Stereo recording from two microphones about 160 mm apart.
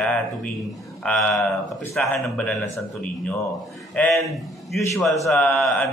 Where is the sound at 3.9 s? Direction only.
5° left (ahead or behind).